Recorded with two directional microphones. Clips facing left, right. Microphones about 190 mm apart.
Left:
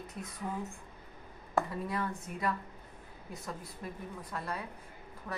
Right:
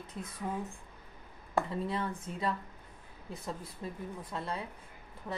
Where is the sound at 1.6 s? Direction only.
25° right (ahead or behind).